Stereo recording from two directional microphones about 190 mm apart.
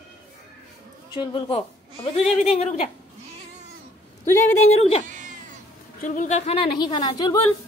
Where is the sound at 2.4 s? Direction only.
35° left (ahead or behind).